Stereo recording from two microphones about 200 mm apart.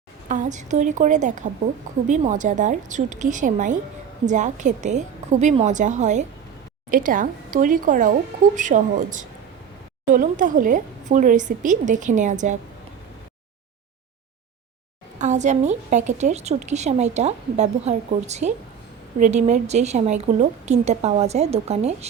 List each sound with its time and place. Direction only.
0.3 s a woman's voice: 35° right (ahead or behind)
15.2 s a woman's voice: 35° right (ahead or behind)